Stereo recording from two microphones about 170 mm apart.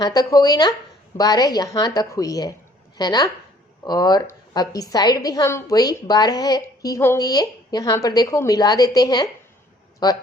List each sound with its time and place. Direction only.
0.0 s a woman's voice: 20° left (ahead or behind)